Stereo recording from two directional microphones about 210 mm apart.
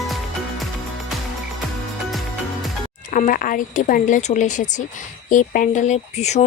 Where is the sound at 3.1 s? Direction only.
40° left (ahead or behind).